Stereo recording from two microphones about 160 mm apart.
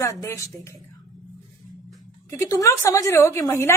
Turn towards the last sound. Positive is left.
turn(degrees=15)  # may be behind; listen again after turning